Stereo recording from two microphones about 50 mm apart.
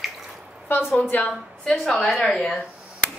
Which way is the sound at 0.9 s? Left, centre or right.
Left.